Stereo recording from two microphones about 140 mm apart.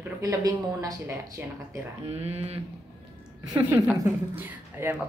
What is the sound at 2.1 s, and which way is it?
Speech, 50° right (ahead or behind).